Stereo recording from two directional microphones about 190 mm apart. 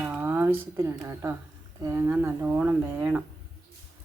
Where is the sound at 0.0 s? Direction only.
10° right (ahead or behind).